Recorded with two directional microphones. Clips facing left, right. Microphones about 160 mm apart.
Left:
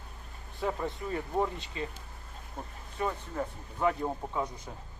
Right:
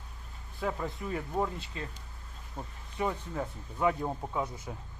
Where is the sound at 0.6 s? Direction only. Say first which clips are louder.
Left 1 dB; centre (ahead or behind).